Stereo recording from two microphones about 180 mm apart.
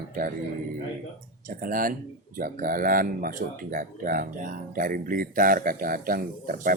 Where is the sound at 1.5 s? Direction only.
50° right (ahead or behind).